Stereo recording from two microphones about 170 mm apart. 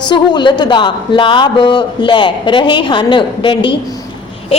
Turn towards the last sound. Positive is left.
turn(degrees=30)  # may be behind; listen again after turning